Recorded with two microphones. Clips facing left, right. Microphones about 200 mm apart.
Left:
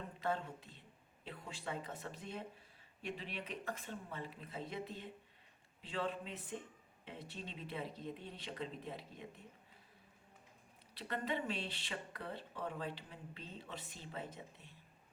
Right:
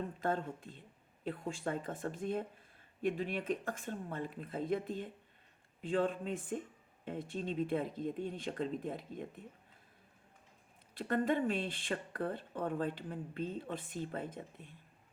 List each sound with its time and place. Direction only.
0.2 s speech: 50° right (ahead or behind)
10.9 s speech: 50° right (ahead or behind)